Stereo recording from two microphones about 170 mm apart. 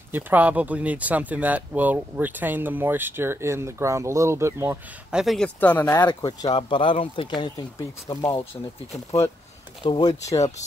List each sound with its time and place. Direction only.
0.1 s speech: 10° right (ahead or behind)
5.1 s speech: centre (ahead or behind)
5.6 s speech: 10° left (ahead or behind)
6.0 s speech: 25° left (ahead or behind)
9.8 s speech: 30° left (ahead or behind)
10.2 s speech: 40° left (ahead or behind)